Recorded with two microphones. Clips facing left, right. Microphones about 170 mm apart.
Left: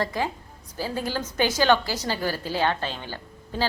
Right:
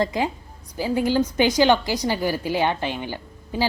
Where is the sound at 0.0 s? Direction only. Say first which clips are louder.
Right 4 dB; 20° right (ahead or behind).